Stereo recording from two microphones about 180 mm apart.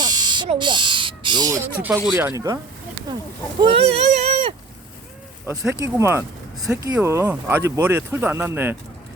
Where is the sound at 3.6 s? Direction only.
30° right (ahead or behind).